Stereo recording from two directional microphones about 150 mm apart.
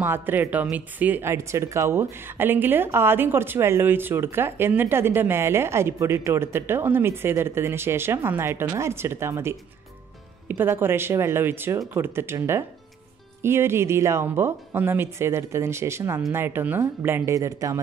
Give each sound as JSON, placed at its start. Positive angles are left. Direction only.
{"t": 0.0, "sound": "speech", "side_deg": -15}